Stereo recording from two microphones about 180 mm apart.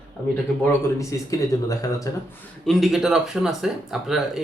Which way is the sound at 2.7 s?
Centre (ahead or behind).